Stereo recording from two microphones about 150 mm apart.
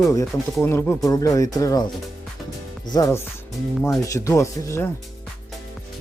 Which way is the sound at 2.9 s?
25° left (ahead or behind).